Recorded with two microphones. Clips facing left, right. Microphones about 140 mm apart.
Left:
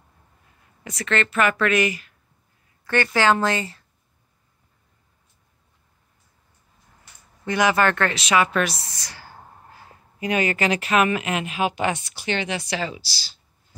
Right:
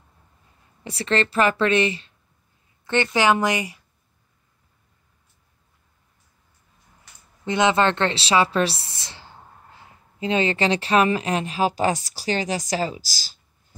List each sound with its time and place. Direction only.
0.8 s a woman's voice: 30° right (ahead or behind); by 3.8 s 15° right (ahead or behind)
7.4 s a woman's voice: 25° right (ahead or behind); by 13.4 s 45° right (ahead or behind)